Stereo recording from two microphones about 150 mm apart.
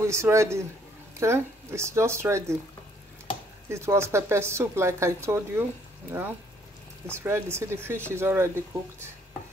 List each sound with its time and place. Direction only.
0.0 s a man's voice: 20° right (ahead or behind)
3.6 s speech: 20° right (ahead or behind)
7.1 s speech: 15° right (ahead or behind)